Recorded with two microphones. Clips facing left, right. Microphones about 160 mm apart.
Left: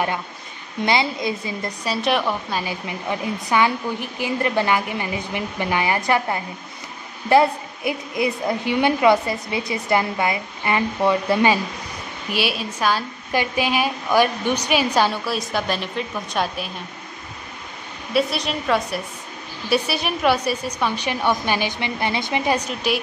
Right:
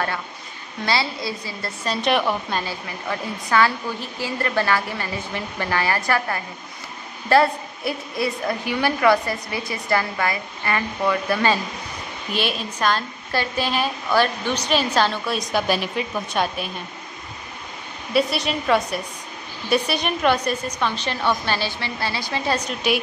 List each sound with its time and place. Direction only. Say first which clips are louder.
0.8 s a woman's voice: left 3 dB; 20° left (ahead or behind)
1.9 s a woman's voice: right 1 dB; centre (ahead or behind)
2.6 s a woman's voice: left 2 dB; 15° left (ahead or behind)
12.3 s a woman's voice: left 1 dB; 5° left (ahead or behind)
15.5 s a woman's voice: right 5 dB; 5° right (ahead or behind)
18.1 s a woman's voice: even; centre (ahead or behind); by 22.6 s 20° left (ahead or behind)
22.8 s a woman's voice: right 1 dB; centre (ahead or behind)